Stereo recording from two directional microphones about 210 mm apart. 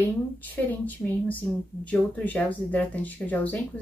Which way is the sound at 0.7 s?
10° left (ahead or behind).